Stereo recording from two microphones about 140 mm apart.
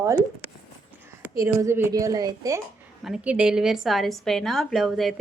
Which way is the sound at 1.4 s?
20° right (ahead or behind).